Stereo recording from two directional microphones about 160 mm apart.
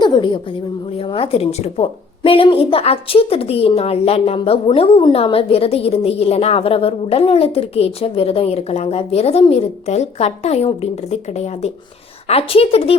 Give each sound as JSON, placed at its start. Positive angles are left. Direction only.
{"t": 0.0, "sound": "a woman's voice", "side_deg": 30}